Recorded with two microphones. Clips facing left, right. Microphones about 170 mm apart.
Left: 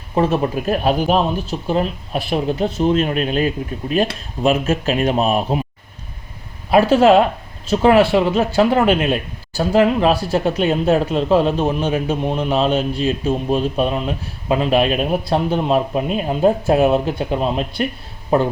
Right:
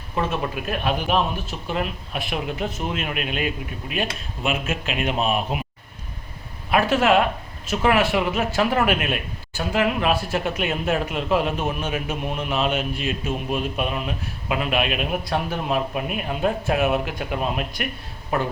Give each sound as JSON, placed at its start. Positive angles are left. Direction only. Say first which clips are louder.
{"t": 0.1, "sound": "speech", "louder": "left 8 dB", "side_deg": 35}
{"t": 6.7, "sound": "speech", "louder": "left 7 dB", "side_deg": 30}